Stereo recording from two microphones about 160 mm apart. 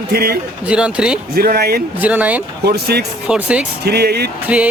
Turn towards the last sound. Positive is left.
turn(degrees=-10)  # may be behind; listen again after turning